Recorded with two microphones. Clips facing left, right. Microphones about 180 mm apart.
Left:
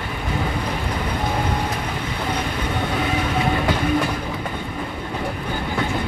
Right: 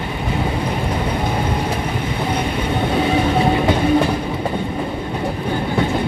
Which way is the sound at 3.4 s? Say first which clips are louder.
Right 5 dB; 30° right (ahead or behind).